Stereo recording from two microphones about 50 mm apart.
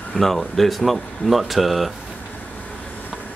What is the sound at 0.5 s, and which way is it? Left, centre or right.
Speech, centre.